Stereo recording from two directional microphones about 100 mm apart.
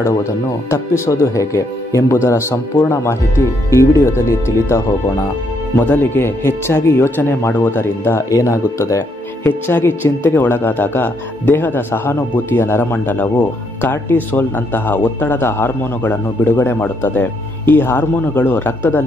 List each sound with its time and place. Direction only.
0.7 s a man's voice: 30° left (ahead or behind)
9.4 s a man's voice: 20° left (ahead or behind)